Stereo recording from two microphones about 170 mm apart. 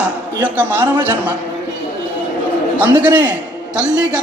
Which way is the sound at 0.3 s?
10° right (ahead or behind).